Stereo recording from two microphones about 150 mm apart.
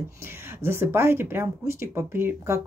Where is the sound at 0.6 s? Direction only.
15° right (ahead or behind).